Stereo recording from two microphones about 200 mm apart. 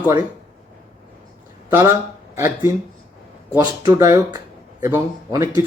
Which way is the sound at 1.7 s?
15° right (ahead or behind).